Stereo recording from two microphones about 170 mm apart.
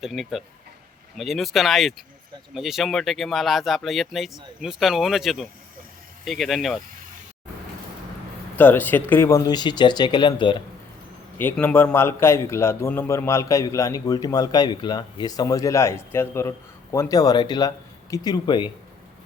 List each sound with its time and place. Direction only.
0.0 s speech: centre (ahead or behind)
8.5 s a man's voice: 10° left (ahead or behind); by 10.6 s 25° left (ahead or behind)
11.3 s a man's voice: 10° left (ahead or behind); by 18.7 s 25° left (ahead or behind)